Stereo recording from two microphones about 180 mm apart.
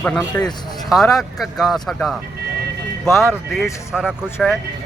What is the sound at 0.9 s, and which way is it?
Speech, centre (ahead or behind).